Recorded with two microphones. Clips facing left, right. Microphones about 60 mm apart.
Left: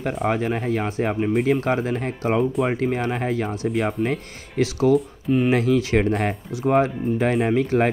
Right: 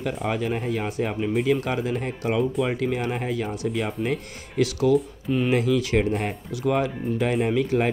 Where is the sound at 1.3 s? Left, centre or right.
Left.